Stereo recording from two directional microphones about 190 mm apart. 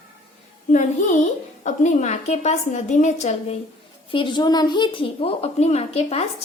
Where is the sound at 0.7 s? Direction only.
40° left (ahead or behind).